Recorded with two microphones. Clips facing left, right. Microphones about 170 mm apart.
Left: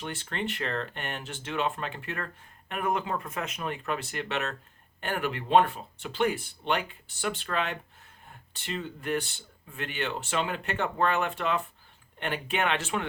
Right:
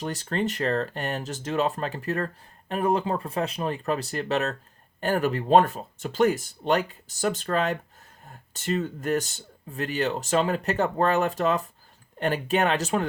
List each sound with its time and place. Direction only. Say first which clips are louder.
0.0 s speech: right 6 dB; 40° right (ahead or behind)